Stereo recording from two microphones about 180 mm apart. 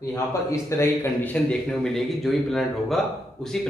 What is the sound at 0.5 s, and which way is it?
A man's voice, 15° left (ahead or behind).